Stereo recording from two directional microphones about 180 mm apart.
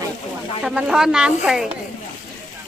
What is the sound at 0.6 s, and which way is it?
Speech, 5° right (ahead or behind).